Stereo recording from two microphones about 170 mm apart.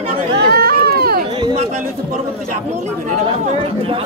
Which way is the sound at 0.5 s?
65° right (ahead or behind).